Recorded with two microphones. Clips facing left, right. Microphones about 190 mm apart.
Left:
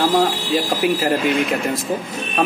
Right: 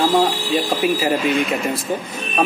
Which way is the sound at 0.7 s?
Centre (ahead or behind).